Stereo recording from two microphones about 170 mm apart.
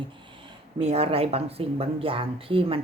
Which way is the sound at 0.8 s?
35° right (ahead or behind).